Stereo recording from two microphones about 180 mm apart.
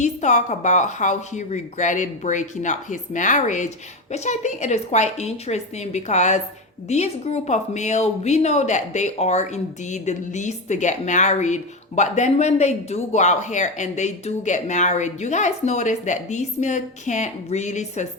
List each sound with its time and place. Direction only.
0.0 s a woman's voice: 40° left (ahead or behind)